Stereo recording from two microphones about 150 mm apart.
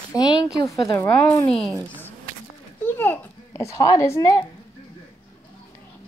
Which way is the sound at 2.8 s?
15° left (ahead or behind).